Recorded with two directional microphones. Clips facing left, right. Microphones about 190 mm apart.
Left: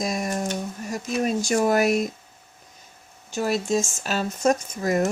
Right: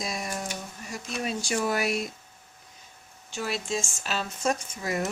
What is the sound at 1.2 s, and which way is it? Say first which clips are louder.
Speech: left 7 dB; 45° left (ahead or behind).